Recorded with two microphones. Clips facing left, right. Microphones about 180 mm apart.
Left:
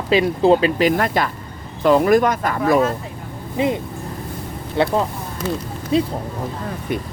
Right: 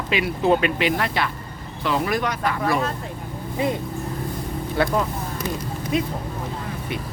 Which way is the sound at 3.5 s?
20° left (ahead or behind).